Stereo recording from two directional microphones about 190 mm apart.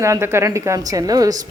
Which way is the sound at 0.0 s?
15° right (ahead or behind).